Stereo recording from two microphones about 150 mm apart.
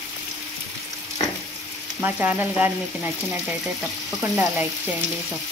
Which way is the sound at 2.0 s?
15° right (ahead or behind).